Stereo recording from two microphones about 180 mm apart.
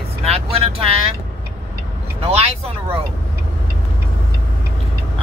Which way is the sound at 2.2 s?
35° right (ahead or behind).